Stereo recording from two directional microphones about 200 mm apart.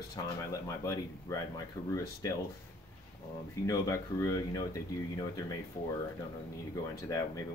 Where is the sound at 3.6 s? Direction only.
15° left (ahead or behind).